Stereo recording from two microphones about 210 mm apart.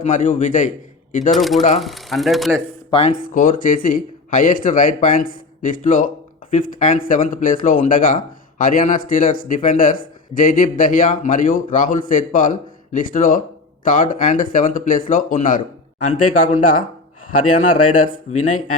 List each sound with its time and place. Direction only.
0.0 s speech: 35° left (ahead or behind)
1.4 s speech: centre (ahead or behind)
2.9 s speech: 25° left (ahead or behind)
3.2 s speech: 40° left (ahead or behind)